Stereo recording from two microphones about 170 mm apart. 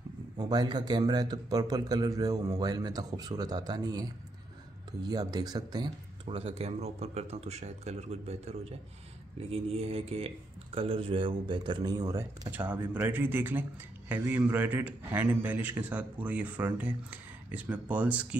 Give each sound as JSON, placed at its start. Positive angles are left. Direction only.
{"t": 0.4, "sound": "speech", "side_deg": -25}
{"t": 6.2, "sound": "a man's voice", "side_deg": -35}